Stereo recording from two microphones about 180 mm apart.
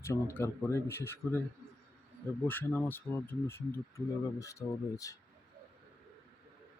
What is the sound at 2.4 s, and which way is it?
A man's voice, 10° left (ahead or behind).